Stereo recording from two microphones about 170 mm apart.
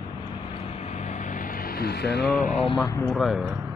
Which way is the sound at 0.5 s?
40° left (ahead or behind).